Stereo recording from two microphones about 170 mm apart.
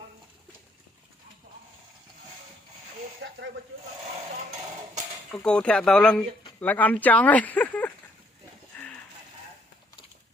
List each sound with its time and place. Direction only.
3.2 s snake: 90° right
5.4 s speech: 5° left (ahead or behind)
8.7 s a sound: 10° left (ahead or behind)